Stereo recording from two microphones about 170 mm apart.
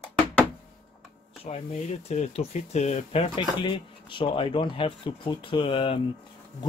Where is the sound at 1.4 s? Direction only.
40° left (ahead or behind).